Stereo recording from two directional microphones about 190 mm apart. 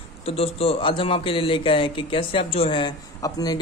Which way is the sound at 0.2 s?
30° left (ahead or behind).